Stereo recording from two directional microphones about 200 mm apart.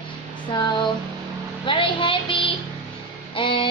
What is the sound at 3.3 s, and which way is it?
Music, 25° left (ahead or behind).